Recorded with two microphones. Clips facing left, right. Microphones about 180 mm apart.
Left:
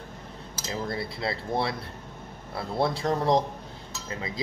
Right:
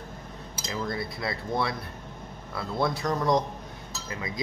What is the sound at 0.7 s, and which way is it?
Speech, 30° left (ahead or behind).